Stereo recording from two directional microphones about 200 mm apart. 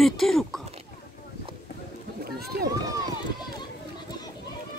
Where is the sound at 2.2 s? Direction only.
50° right (ahead or behind).